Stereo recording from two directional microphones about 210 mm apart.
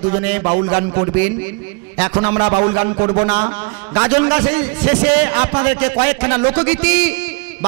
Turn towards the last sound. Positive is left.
turn(degrees=-10)  # may be behind; listen again after turning